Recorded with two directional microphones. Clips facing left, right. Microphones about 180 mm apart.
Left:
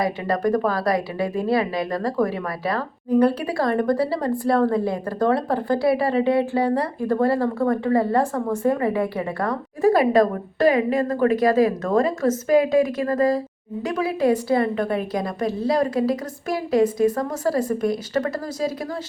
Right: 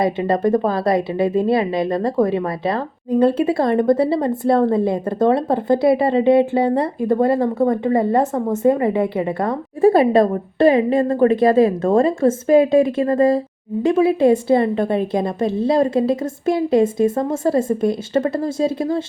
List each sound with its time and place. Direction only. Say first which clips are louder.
0.0 s a woman's voice: right 5 dB; 25° right (ahead or behind)